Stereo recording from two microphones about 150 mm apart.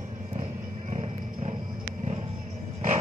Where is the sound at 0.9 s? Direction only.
45° right (ahead or behind).